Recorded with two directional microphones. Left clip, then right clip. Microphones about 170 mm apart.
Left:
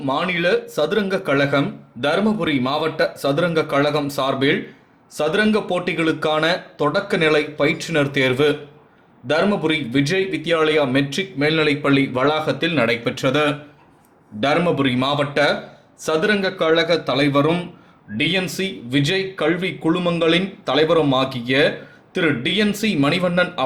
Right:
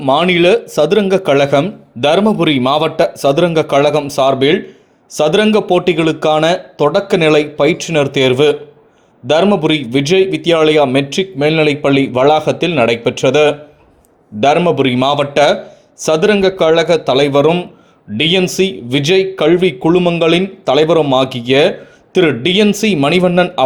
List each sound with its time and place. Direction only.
0.0 s a man's voice: 45° right (ahead or behind)